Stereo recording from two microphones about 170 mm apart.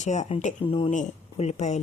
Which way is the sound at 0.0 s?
45° left (ahead or behind).